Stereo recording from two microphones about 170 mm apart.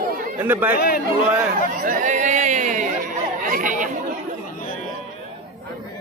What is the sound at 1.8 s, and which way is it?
Speech, 50° right (ahead or behind).